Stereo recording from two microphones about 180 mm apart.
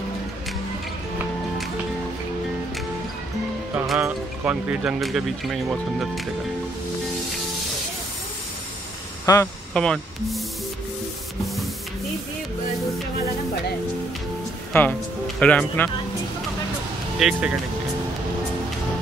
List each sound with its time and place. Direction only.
3.7 s speech: 5° right (ahead or behind)
9.2 s speech: 20° left (ahead or behind)
9.8 s speech: 5° left (ahead or behind)
14.7 s speech: 10° left (ahead or behind)
17.2 s speech: 5° right (ahead or behind)